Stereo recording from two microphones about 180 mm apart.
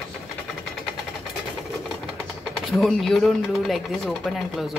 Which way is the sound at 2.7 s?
Centre (ahead or behind).